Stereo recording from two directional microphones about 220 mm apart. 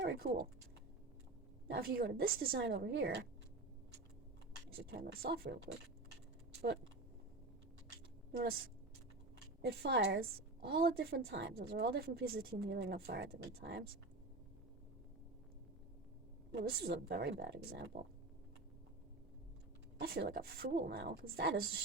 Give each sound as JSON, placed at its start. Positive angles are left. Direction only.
{"t": 0.0, "sound": "speech", "side_deg": -50}
{"t": 1.7, "sound": "a woman's voice", "side_deg": -40}
{"t": 4.9, "sound": "a woman's voice", "side_deg": -45}
{"t": 8.3, "sound": "a woman's voice", "side_deg": -45}
{"t": 9.6, "sound": "a woman's voice", "side_deg": -45}
{"t": 16.6, "sound": "a woman's voice", "side_deg": -45}
{"t": 20.0, "sound": "a woman's voice", "side_deg": -50}